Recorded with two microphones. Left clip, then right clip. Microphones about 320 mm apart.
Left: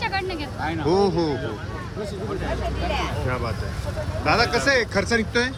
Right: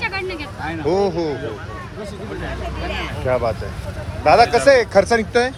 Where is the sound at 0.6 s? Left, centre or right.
Centre.